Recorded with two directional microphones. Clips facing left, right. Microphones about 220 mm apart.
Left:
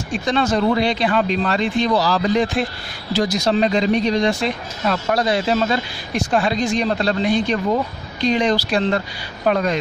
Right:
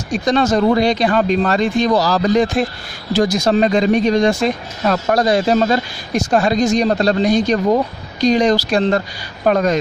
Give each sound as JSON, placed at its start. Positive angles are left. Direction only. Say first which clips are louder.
{"t": 0.1, "sound": "speech", "louder": "right 4 dB", "side_deg": -40}